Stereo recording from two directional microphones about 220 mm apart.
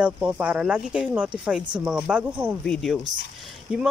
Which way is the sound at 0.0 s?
5° right (ahead or behind).